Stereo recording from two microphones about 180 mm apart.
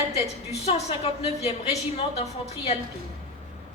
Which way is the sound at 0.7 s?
35° left (ahead or behind).